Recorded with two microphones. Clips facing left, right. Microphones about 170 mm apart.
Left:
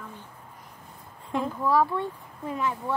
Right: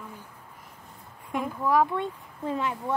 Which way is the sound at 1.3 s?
15° right (ahead or behind).